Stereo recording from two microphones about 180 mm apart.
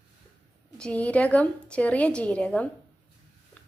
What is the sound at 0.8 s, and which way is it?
A woman's voice, 5° left (ahead or behind).